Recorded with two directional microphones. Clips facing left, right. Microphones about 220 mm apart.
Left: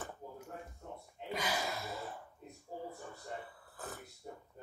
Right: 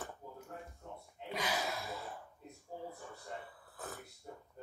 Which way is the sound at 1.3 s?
Centre (ahead or behind).